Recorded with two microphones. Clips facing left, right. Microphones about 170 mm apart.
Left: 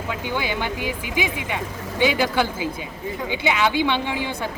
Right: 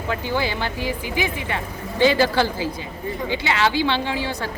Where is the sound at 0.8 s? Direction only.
15° left (ahead or behind).